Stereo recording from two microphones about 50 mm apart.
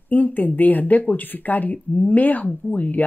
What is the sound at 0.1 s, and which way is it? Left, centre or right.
Speech, left.